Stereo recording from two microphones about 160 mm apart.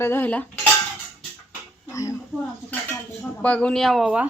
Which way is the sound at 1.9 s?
20° left (ahead or behind).